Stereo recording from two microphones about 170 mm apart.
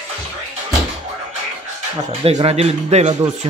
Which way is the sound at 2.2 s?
35° right (ahead or behind).